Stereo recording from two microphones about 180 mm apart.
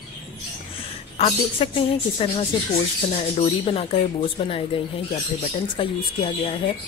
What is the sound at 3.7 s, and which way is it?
Speech, 30° left (ahead or behind).